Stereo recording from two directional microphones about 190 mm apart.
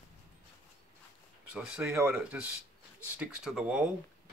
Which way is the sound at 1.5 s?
5° right (ahead or behind).